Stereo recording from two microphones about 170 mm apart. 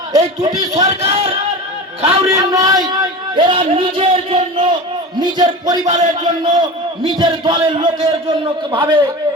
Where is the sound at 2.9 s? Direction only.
25° right (ahead or behind).